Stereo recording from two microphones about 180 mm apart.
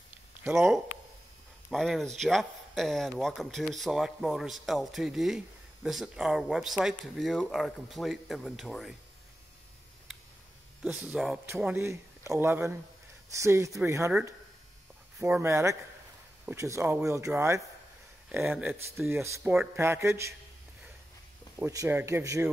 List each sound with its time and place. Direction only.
0.4 s speech: centre (ahead or behind)
10.8 s speech: 5° right (ahead or behind)
15.2 s speech: 10° right (ahead or behind)
19.5 s speech: 5° right (ahead or behind)
19.8 s speech: 15° right (ahead or behind)
21.5 s speech: 15° right (ahead or behind)